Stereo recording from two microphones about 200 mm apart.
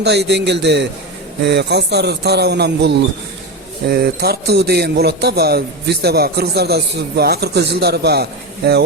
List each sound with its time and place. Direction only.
0.0 s a man's voice: 55° right (ahead or behind)